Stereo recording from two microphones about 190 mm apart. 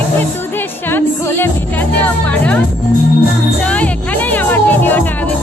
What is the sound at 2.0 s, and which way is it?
Speech, 10° left (ahead or behind).